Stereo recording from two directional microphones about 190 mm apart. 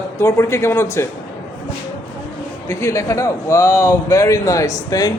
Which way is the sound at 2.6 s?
15° left (ahead or behind).